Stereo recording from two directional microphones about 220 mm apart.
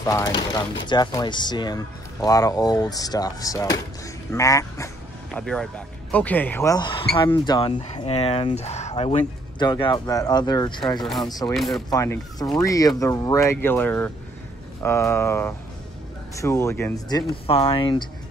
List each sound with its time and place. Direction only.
0.0 s speech: 15° left (ahead or behind)
5.3 s speech: 5° left (ahead or behind); by 11.0 s 20° left (ahead or behind)
11.0 s speech: centre (ahead or behind)
11.2 s speech: 15° left (ahead or behind)
11.5 s speech: centre (ahead or behind)
11.9 s speech: 15° left (ahead or behind)
17.5 s speech: 25° left (ahead or behind)